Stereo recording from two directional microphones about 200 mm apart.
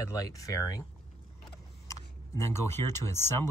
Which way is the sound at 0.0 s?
15° left (ahead or behind).